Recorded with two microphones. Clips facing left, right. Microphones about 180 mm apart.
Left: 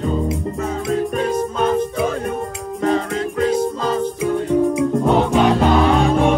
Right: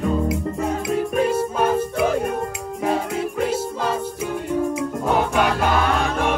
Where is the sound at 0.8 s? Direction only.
5° right (ahead or behind).